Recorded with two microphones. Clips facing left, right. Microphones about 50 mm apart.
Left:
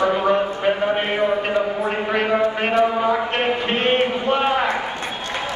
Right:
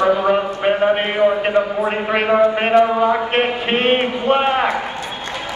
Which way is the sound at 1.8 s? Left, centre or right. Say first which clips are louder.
Right 2 dB; right.